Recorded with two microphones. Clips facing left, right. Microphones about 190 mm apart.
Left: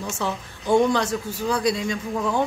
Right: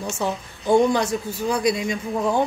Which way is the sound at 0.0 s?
15° right (ahead or behind).